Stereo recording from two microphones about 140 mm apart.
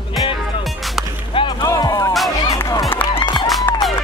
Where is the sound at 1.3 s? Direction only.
35° left (ahead or behind).